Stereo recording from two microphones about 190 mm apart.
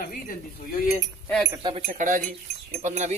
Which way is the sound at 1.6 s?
35° right (ahead or behind).